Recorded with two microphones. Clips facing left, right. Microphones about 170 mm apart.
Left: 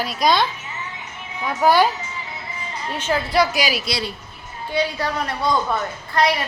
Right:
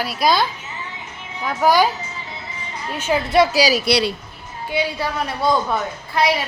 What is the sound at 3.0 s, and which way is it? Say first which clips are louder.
Speech: right 2 dB; 10° right (ahead or behind).